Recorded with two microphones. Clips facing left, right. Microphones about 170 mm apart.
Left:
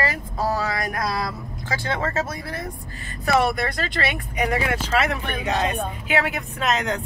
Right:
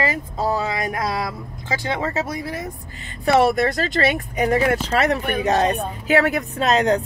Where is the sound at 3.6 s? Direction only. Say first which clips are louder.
Right 6 dB; 45° right (ahead or behind).